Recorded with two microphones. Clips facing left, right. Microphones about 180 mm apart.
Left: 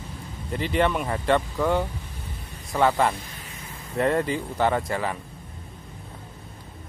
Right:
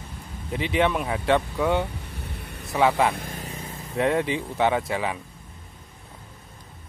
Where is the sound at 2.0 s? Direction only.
65° right (ahead or behind).